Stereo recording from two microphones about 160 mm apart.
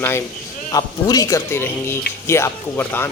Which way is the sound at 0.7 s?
25° left (ahead or behind).